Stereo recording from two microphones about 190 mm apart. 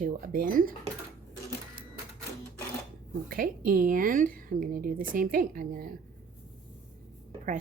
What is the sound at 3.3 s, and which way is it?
Speech, 50° right (ahead or behind).